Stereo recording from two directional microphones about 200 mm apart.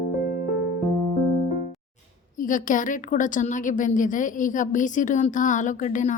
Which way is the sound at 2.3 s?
40° left (ahead or behind).